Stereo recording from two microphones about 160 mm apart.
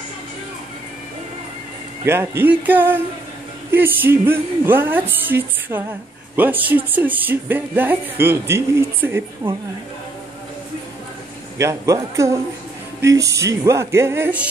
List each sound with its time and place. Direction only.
2.0 s a woman's voice: 15° right (ahead or behind)
11.5 s a man's voice: 20° right (ahead or behind)